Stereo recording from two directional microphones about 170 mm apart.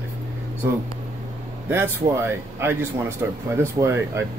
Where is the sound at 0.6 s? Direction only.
15° right (ahead or behind).